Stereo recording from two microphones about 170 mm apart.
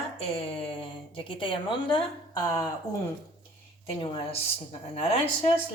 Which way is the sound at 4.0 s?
35° left (ahead or behind).